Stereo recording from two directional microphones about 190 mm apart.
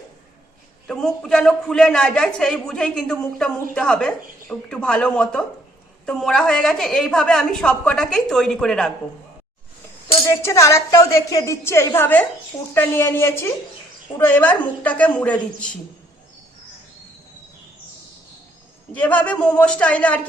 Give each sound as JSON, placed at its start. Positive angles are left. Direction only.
{"t": 0.9, "sound": "a man's voice", "side_deg": 5}
{"t": 10.2, "sound": "a woman's voice", "side_deg": 15}
{"t": 18.9, "sound": "a woman's voice", "side_deg": 5}